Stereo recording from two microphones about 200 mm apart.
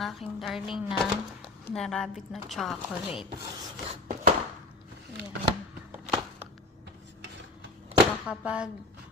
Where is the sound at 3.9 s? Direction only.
40° right (ahead or behind).